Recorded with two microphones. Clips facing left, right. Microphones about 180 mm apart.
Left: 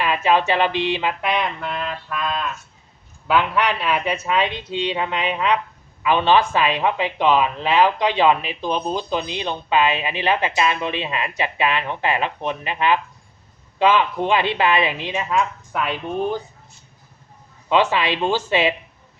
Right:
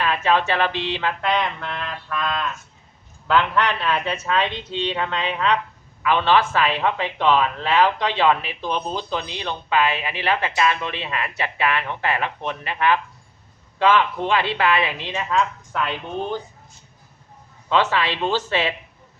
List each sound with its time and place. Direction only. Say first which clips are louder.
0.0 s speech: left 2 dB; 15° left (ahead or behind)
17.7 s speech: left 2 dB; 15° left (ahead or behind)